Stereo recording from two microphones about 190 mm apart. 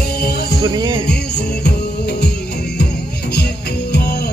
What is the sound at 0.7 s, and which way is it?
Music, 25° right (ahead or behind).